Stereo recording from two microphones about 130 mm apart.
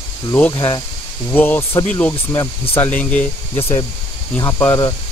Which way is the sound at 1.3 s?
15° left (ahead or behind).